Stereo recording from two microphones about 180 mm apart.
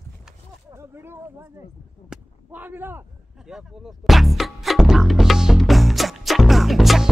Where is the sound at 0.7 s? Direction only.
15° right (ahead or behind).